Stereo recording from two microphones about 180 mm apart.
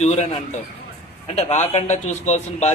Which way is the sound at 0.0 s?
40° left (ahead or behind).